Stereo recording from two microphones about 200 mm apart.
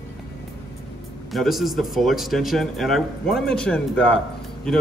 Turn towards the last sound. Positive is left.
turn(degrees=5)  # may be behind; listen again after turning